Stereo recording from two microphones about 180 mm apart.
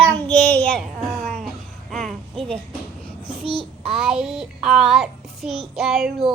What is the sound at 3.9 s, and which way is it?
A child's voice, centre (ahead or behind).